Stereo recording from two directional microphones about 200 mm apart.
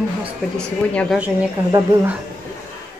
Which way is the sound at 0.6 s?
5° left (ahead or behind).